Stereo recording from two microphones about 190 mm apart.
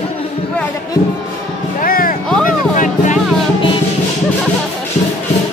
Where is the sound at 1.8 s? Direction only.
50° left (ahead or behind).